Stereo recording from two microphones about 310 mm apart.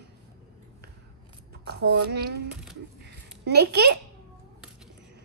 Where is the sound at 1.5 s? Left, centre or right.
Right.